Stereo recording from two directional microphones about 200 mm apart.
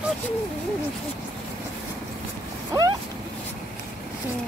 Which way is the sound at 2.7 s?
20° right (ahead or behind).